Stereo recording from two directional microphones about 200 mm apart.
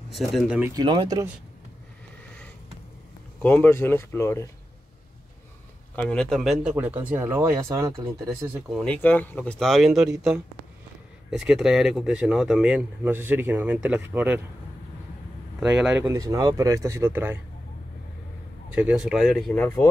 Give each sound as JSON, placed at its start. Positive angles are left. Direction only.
{"t": 0.1, "sound": "speech", "side_deg": 0}
{"t": 0.7, "sound": "speech", "side_deg": -20}
{"t": 3.4, "sound": "speech", "side_deg": 10}
{"t": 5.9, "sound": "speech", "side_deg": 5}
{"t": 8.6, "sound": "speech", "side_deg": 5}
{"t": 15.6, "sound": "speech", "side_deg": -5}
{"t": 18.7, "sound": "speech", "side_deg": -5}